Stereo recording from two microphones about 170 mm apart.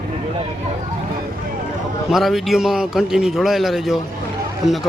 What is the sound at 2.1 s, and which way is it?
A man's voice, centre (ahead or behind).